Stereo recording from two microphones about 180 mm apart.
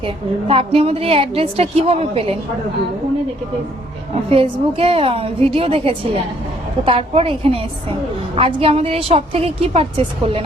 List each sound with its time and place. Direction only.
0.0 s a woman's voice: 30° right (ahead or behind)
4.3 s a woman's voice: 30° right (ahead or behind)